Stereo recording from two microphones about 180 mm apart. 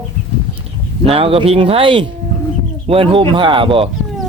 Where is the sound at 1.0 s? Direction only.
30° right (ahead or behind).